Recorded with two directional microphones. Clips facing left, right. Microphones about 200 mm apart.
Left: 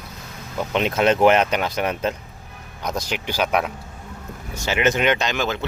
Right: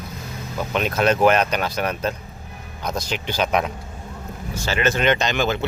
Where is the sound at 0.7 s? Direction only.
20° left (ahead or behind).